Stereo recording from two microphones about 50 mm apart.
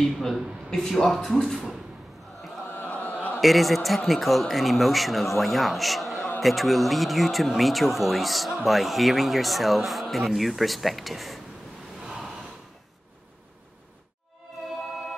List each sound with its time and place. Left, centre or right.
0.0 s speech: centre
2.9 s chant: left
3.3 s speech: centre
12.0 s gasp: centre